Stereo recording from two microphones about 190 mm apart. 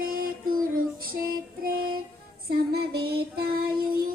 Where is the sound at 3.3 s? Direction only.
55° right (ahead or behind).